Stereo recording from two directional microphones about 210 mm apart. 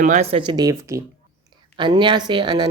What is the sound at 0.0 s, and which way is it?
Speech, 35° right (ahead or behind).